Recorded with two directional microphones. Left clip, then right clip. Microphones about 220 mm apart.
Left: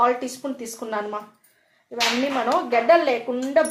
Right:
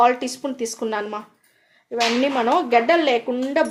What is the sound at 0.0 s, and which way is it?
Speech, 50° right (ahead or behind).